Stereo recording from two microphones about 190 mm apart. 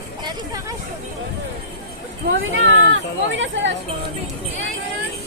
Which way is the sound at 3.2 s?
70° right (ahead or behind).